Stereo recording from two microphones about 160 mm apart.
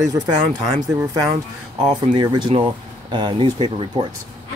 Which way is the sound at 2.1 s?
30° right (ahead or behind).